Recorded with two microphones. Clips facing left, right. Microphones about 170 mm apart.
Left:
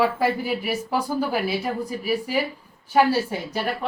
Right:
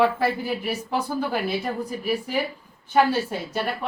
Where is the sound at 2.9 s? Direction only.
10° left (ahead or behind).